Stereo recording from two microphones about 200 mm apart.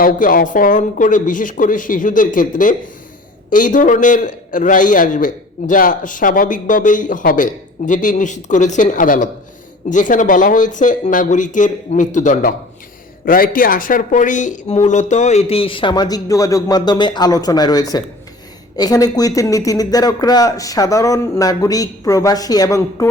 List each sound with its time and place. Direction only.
0.0 s a man's voice: 45° left (ahead or behind); by 23.0 s 15° left (ahead or behind)